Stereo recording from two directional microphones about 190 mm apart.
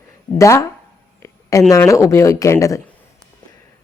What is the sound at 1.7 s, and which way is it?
A woman's voice, 15° left (ahead or behind).